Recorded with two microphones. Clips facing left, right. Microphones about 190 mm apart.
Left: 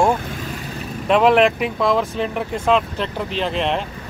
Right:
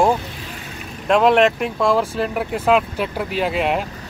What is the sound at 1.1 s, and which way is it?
Speech, centre (ahead or behind).